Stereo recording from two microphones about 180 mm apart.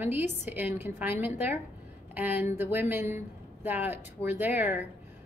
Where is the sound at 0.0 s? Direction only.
10° right (ahead or behind).